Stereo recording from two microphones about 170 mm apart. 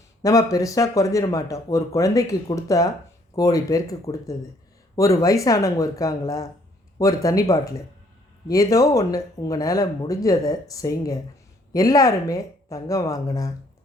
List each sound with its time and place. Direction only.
0.2 s speech: 20° left (ahead or behind)